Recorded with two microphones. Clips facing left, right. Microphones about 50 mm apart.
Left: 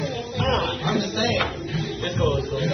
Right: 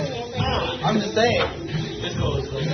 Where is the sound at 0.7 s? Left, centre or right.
Right.